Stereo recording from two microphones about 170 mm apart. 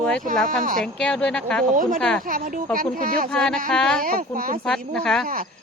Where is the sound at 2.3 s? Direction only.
55° right (ahead or behind).